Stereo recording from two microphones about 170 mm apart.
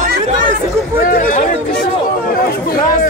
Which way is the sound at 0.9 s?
55° left (ahead or behind).